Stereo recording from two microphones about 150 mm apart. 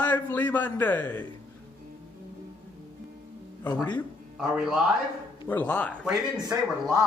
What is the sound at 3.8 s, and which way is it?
Speech, 10° left (ahead or behind).